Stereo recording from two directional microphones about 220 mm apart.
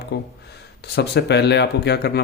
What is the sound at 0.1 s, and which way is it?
Speech, 50° left (ahead or behind).